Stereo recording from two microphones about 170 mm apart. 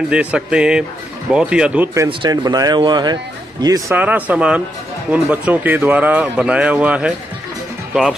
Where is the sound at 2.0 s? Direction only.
25° right (ahead or behind).